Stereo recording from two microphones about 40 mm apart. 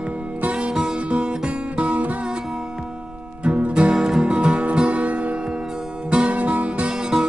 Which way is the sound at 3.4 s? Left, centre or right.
Right.